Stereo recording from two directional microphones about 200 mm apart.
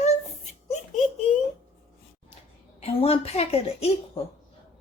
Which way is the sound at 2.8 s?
30° left (ahead or behind).